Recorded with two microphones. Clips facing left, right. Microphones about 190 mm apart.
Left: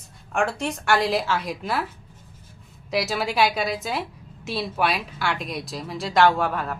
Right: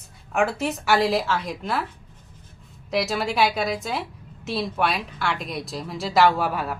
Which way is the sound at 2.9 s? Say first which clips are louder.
Right 1 dB; centre (ahead or behind).